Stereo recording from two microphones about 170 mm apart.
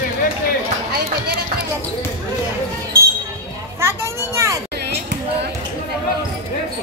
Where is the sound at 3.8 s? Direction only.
15° right (ahead or behind).